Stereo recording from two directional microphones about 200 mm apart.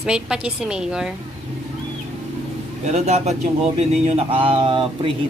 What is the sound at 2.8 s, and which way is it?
Speech, 35° right (ahead or behind).